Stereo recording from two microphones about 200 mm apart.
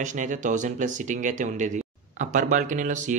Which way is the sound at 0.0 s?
40° right (ahead or behind).